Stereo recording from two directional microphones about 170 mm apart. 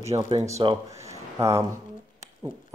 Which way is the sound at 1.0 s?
15° right (ahead or behind).